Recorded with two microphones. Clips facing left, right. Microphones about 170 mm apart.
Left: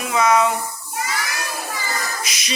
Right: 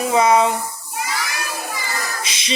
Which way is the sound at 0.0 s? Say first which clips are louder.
Right 2 dB; 30° right (ahead or behind).